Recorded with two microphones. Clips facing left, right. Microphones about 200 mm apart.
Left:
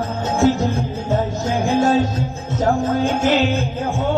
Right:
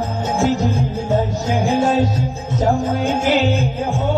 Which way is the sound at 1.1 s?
15° right (ahead or behind).